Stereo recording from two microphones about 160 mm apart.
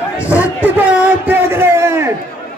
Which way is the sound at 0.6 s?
10° right (ahead or behind).